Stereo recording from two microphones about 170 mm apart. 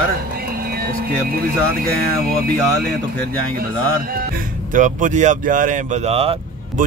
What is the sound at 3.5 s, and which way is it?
Speech, 60° right (ahead or behind).